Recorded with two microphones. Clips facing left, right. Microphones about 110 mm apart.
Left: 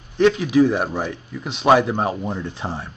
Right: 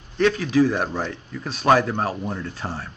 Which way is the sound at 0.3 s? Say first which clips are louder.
Left 1 dB; 15° left (ahead or behind).